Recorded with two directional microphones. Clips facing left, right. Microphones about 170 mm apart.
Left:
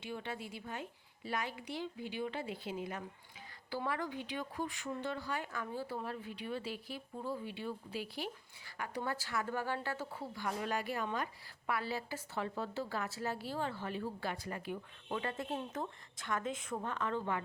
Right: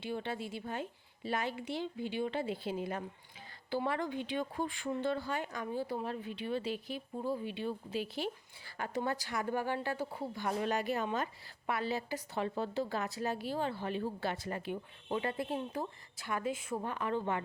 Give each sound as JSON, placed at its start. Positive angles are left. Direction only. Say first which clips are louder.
{"t": 0.0, "sound": "speech", "louder": "right 5 dB", "side_deg": -30}